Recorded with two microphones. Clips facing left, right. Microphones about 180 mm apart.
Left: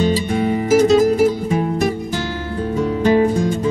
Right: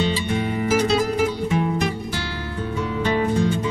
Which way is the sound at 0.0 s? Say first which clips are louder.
Left 5 dB; 40° left (ahead or behind).